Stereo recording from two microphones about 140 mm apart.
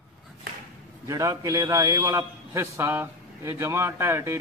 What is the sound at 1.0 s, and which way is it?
A man's voice, 25° right (ahead or behind).